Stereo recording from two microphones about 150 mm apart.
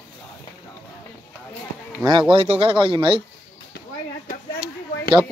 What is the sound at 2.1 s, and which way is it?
Speech, 35° right (ahead or behind).